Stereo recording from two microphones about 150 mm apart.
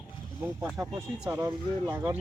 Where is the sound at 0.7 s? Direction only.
20° right (ahead or behind).